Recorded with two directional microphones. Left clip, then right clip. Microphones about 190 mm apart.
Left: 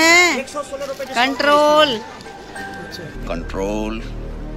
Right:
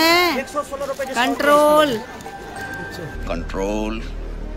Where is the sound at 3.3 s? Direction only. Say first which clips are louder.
Left 1 dB; centre (ahead or behind).